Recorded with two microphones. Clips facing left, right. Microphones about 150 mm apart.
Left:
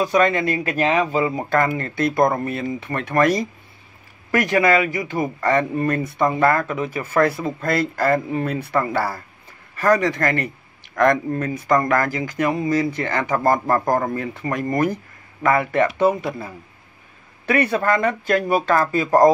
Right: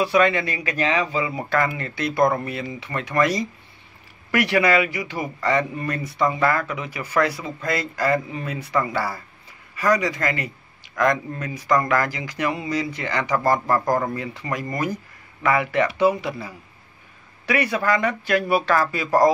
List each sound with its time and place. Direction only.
0.0 s speech: 45° left (ahead or behind)
4.3 s speech: 45° left (ahead or behind)